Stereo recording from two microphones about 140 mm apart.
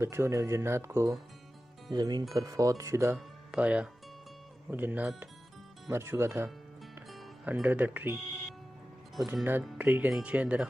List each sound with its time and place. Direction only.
0.0 s speech: 20° right (ahead or behind)
3.2 s speech: 10° right (ahead or behind)
7.6 s speech: 10° right (ahead or behind)
9.3 s speech: 15° right (ahead or behind)